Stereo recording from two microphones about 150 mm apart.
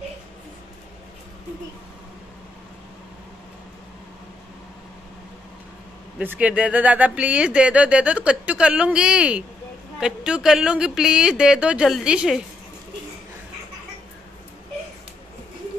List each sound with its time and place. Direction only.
6.1 s speech: 10° right (ahead or behind)